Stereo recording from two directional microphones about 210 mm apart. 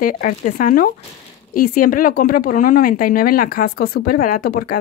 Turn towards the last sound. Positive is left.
turn(degrees=45)  # may be behind; listen again after turning